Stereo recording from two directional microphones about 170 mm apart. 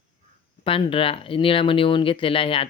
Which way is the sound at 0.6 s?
30° left (ahead or behind).